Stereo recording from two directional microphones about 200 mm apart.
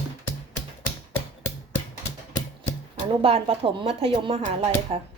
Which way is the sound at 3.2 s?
30° right (ahead or behind).